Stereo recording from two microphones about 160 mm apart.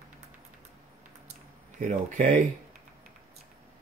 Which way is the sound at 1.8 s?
50° right (ahead or behind).